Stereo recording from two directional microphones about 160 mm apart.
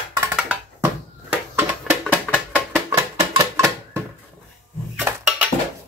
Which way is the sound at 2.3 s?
10° left (ahead or behind).